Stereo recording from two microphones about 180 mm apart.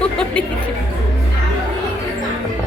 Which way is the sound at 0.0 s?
5° left (ahead or behind).